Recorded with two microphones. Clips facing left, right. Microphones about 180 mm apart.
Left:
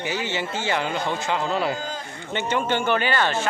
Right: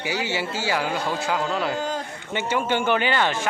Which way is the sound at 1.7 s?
70° right (ahead or behind).